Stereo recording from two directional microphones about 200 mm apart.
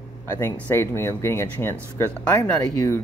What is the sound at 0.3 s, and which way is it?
Speech, 15° left (ahead or behind).